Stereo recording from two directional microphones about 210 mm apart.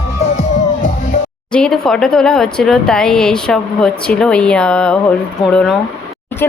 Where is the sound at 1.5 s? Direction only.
5° left (ahead or behind).